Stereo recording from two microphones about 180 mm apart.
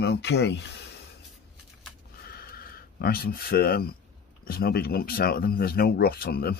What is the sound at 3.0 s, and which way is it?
Speech, 60° left (ahead or behind).